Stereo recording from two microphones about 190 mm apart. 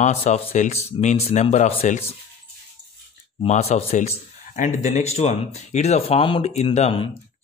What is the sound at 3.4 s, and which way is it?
Speech, 35° left (ahead or behind).